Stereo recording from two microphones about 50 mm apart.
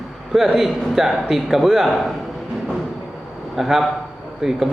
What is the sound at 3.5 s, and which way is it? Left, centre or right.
A man's voice, centre.